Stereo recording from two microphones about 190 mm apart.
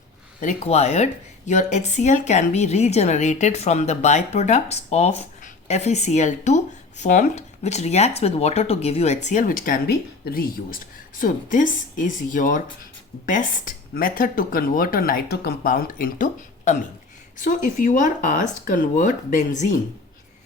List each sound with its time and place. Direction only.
0.3 s speech: 35° left (ahead or behind)